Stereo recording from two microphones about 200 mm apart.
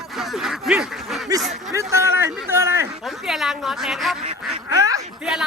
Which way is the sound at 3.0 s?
Centre (ahead or behind).